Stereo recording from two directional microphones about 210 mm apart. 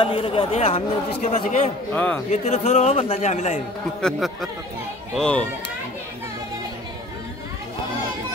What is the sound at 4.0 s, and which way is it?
Speech, centre (ahead or behind).